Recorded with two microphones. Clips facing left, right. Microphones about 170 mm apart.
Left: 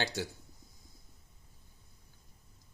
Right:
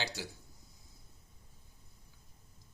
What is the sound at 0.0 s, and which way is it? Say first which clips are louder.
Speech: left 5 dB; 50° left (ahead or behind).